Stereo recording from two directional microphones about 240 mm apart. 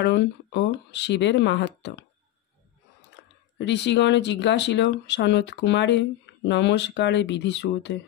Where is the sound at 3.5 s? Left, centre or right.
Left.